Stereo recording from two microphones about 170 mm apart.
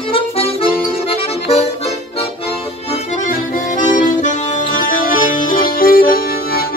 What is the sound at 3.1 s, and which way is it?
Accordion, 50° left (ahead or behind).